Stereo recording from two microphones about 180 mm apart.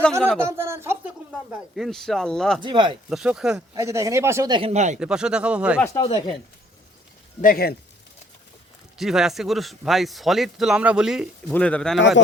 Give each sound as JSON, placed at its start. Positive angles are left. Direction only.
{"t": 0.3, "sound": "speech", "side_deg": -15}
{"t": 2.6, "sound": "speech", "side_deg": -25}
{"t": 3.1, "sound": "speech", "side_deg": -5}
{"t": 3.8, "sound": "speech", "side_deg": -15}
{"t": 4.5, "sound": "speech", "side_deg": -35}
{"t": 4.9, "sound": "speech", "side_deg": -5}
{"t": 6.0, "sound": "speech", "side_deg": 30}
{"t": 7.4, "sound": "speech", "side_deg": 55}
{"t": 9.0, "sound": "speech", "side_deg": 0}
{"t": 11.5, "sound": "speech", "side_deg": 5}